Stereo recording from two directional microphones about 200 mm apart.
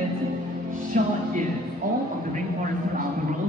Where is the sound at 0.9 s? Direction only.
40° right (ahead or behind).